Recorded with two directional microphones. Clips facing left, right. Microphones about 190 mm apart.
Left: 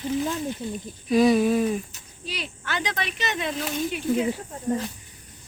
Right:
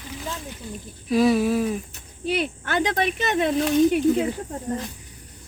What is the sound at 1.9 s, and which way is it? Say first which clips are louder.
Speech: right 11 dB; 55° right (ahead or behind).